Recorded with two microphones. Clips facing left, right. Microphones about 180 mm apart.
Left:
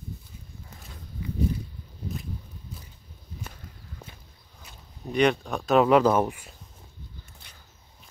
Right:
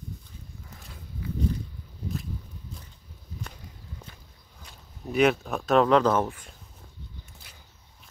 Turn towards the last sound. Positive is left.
turn(degrees=10)  # may be behind; listen again after turning